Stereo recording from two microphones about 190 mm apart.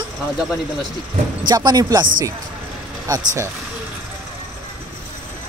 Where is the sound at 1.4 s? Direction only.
20° right (ahead or behind).